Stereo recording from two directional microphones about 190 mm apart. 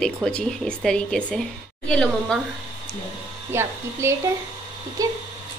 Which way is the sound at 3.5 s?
15° right (ahead or behind).